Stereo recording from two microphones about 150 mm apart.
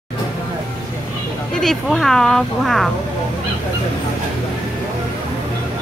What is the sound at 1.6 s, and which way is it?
Speech, 5° left (ahead or behind).